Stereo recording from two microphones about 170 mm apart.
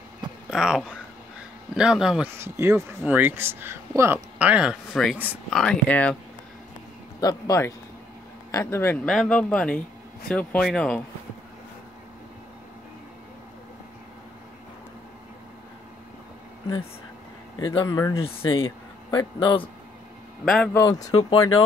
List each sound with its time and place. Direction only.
0.5 s speech: 5° right (ahead or behind)
2.3 s speech: 15° right (ahead or behind); by 6.1 s 5° left (ahead or behind)
7.2 s speech: 20° left (ahead or behind)
9.0 s speech: centre (ahead or behind)
17.8 s speech: 20° left (ahead or behind)
18.1 s speech: 35° left (ahead or behind)
20.4 s speech: 5° left (ahead or behind)
20.7 s speech: 20° left (ahead or behind)